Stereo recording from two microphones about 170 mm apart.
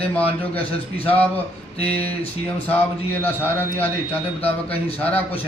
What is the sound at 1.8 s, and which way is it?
Speech, 10° left (ahead or behind).